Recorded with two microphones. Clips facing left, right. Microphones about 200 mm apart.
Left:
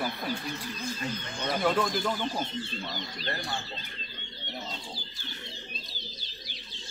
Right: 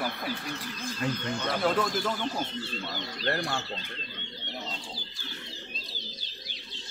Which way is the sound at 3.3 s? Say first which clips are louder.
Right 6 dB; 65° right (ahead or behind).